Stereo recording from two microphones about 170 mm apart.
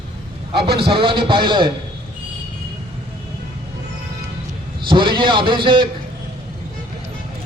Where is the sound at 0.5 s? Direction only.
30° right (ahead or behind).